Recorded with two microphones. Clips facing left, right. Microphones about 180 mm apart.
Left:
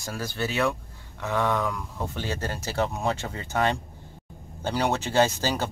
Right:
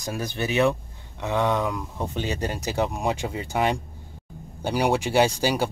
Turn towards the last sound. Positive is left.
turn(degrees=-10)  # may be behind; listen again after turning